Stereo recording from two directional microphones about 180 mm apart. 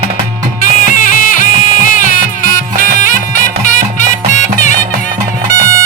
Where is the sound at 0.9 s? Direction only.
45° left (ahead or behind).